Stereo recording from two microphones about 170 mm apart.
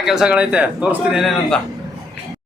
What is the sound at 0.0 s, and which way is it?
Speech, 5° right (ahead or behind).